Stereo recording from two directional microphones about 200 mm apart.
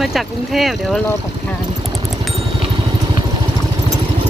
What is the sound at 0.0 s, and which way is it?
Speech, centre (ahead or behind).